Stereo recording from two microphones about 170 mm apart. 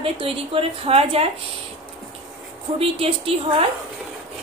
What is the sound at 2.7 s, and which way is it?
Speech, 35° right (ahead or behind).